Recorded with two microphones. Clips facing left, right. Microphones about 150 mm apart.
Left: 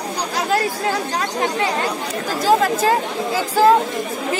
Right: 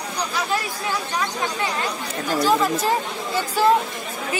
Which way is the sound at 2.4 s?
90° left.